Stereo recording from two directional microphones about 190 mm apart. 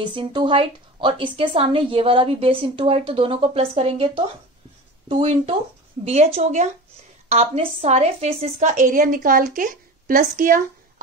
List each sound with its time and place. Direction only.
0.0 s a woman's voice: 25° right (ahead or behind); by 10.6 s 45° right (ahead or behind)